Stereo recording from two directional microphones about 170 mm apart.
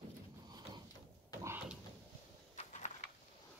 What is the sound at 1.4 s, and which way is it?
Door, 15° right (ahead or behind).